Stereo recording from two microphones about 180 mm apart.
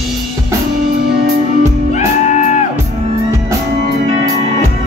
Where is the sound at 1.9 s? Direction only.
40° left (ahead or behind).